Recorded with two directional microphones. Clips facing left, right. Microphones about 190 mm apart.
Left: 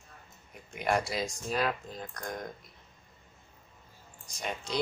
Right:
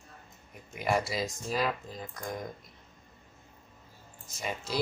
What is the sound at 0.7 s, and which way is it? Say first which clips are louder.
Speech: even; centre (ahead or behind).